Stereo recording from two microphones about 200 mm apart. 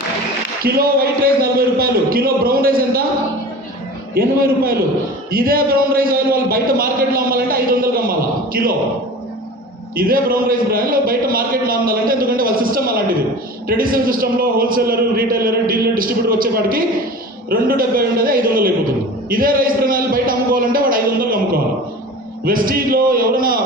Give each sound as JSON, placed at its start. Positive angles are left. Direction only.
{"t": 0.6, "sound": "a man's voice", "side_deg": -45}
{"t": 4.1, "sound": "a man's voice", "side_deg": -50}
{"t": 9.9, "sound": "a man's voice", "side_deg": -45}